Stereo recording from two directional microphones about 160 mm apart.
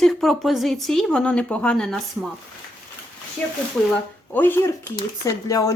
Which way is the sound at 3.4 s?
10° left (ahead or behind).